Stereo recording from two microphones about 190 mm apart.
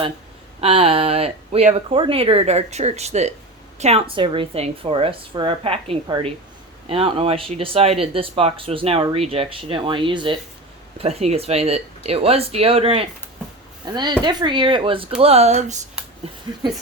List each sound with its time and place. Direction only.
0.6 s speech: 30° right (ahead or behind)